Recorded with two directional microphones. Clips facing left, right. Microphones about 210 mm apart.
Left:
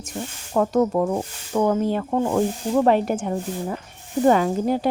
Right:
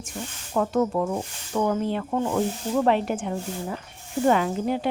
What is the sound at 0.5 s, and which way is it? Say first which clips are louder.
Speech: left 4 dB; 40° left (ahead or behind).